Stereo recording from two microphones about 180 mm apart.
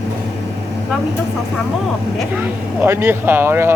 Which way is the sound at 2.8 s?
15° right (ahead or behind).